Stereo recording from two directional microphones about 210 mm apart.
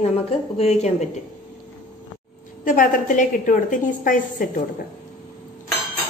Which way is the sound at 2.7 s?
40° left (ahead or behind).